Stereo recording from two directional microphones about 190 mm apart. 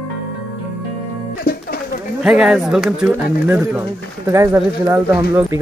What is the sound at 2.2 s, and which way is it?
Speech, 5° right (ahead or behind).